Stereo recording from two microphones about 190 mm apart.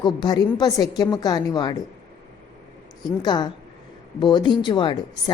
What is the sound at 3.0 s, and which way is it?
A woman's voice, 20° left (ahead or behind).